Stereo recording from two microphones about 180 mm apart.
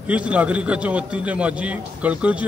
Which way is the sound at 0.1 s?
5° right (ahead or behind).